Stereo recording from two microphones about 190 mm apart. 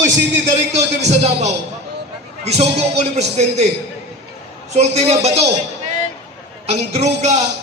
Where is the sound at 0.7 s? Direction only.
35° right (ahead or behind).